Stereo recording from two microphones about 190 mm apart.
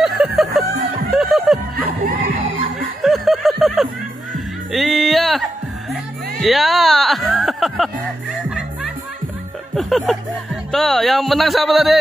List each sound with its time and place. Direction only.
0.0 s music: centre (ahead or behind)
1.8 s a sound: 50° right (ahead or behind)
3.0 s snicker: centre (ahead or behind)
4.7 s music: centre (ahead or behind)
9.8 s music: centre (ahead or behind)